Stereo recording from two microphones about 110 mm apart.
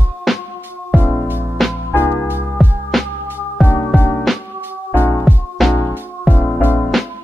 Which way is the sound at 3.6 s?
20° left (ahead or behind).